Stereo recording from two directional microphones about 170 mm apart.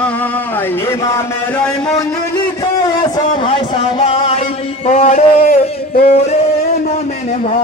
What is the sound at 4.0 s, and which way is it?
Music, 35° left (ahead or behind).